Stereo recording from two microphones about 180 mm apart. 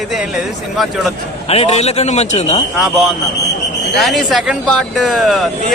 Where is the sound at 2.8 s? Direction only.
Centre (ahead or behind).